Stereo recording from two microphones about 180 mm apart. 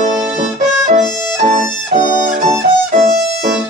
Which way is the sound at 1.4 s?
45° right (ahead or behind).